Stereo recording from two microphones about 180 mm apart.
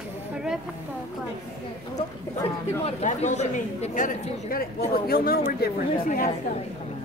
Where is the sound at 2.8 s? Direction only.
40° left (ahead or behind).